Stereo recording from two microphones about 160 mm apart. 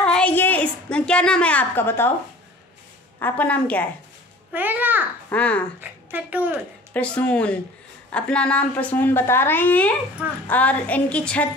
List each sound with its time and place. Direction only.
0.0 s a sound: 5° left (ahead or behind)
3.2 s speech: 10° left (ahead or behind)
4.5 s a child's voice: 10° right (ahead or behind)
5.3 s speech: 10° left (ahead or behind)
5.8 s a woman's voice: 10° right (ahead or behind)
6.9 s speech: 10° left (ahead or behind)